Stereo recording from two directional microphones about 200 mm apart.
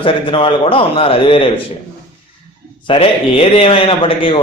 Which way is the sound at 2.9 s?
30° left (ahead or behind).